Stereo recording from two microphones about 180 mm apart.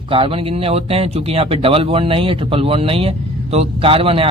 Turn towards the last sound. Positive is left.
turn(degrees=-30)  # may be behind; listen again after turning